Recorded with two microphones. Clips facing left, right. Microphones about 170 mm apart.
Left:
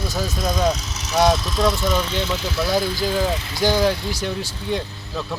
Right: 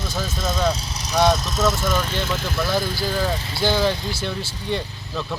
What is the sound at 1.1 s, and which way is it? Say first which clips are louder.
Speech: left 1 dB; 5° left (ahead or behind).